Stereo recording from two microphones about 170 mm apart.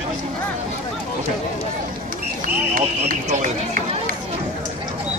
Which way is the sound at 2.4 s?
55° right (ahead or behind).